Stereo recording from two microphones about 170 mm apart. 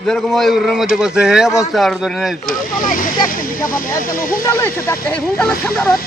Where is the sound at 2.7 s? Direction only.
55° left (ahead or behind).